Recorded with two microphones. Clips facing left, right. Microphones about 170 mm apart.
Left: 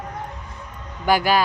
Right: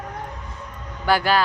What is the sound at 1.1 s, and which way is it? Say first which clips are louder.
Speech: left 1 dB; 15° left (ahead or behind).